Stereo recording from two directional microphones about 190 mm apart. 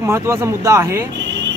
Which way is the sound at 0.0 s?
15° right (ahead or behind).